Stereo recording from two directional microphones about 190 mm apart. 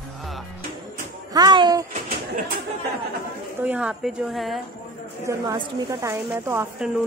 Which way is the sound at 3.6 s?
10° right (ahead or behind).